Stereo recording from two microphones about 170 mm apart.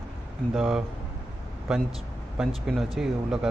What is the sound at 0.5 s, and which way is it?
Speech, 5° right (ahead or behind).